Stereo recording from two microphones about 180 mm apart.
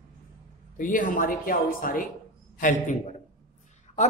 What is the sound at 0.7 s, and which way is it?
Speech, 50° left (ahead or behind).